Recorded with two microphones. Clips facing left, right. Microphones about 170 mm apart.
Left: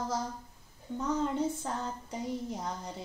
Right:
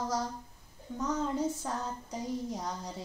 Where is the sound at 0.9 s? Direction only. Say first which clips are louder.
Left 1 dB; 5° left (ahead or behind).